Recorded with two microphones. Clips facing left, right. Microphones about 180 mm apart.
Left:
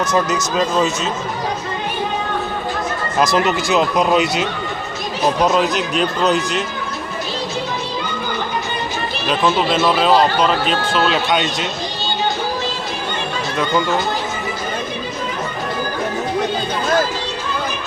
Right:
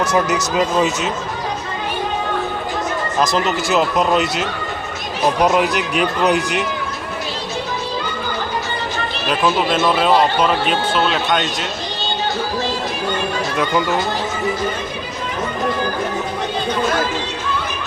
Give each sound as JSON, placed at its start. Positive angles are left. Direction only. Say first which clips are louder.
{"t": 0.5, "sound": "speech", "louder": "even", "side_deg": -15}
{"t": 3.3, "sound": "speech", "louder": "left 1 dB", "side_deg": 0}
{"t": 9.2, "sound": "speech", "louder": "left 1 dB", "side_deg": -5}